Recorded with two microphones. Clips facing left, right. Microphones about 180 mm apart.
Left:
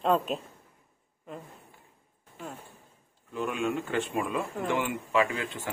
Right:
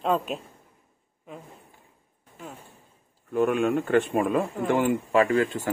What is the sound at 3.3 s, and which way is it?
A man's voice, 55° right (ahead or behind).